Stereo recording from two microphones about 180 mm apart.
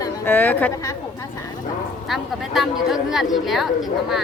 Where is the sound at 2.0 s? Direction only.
Centre (ahead or behind).